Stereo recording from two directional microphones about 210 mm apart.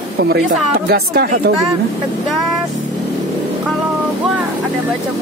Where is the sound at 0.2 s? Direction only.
50° right (ahead or behind).